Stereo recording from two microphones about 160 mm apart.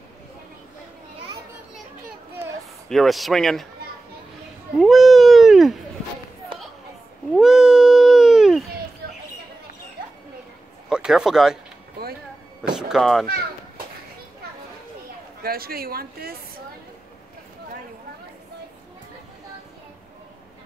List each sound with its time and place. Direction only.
2.9 s speech: centre (ahead or behind)
4.7 s a sound: centre (ahead or behind)
7.3 s a sound: 5° right (ahead or behind)
10.9 s speech: 5° right (ahead or behind)
12.7 s speech: 5° right (ahead or behind)
15.4 s a woman's voice: 70° right (ahead or behind)